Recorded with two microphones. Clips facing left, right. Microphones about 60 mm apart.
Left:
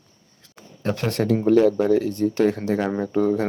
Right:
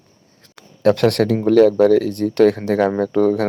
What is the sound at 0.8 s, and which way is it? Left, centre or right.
Speech, right.